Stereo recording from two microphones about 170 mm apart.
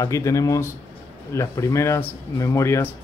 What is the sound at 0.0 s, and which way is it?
Speech, 20° left (ahead or behind).